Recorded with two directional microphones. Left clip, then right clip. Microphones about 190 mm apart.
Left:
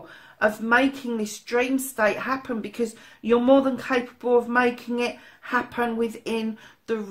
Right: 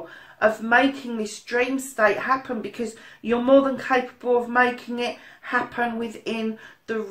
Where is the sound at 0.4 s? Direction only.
45° left (ahead or behind).